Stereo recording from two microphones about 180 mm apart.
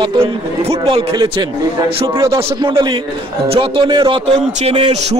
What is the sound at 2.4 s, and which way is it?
A man's voice, 30° right (ahead or behind).